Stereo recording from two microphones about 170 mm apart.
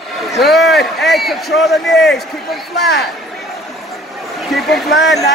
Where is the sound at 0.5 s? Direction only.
Centre (ahead or behind).